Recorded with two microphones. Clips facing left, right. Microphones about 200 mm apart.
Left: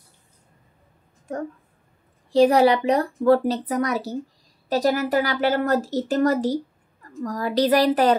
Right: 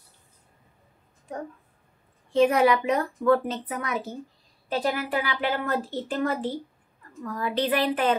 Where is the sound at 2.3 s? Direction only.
35° left (ahead or behind).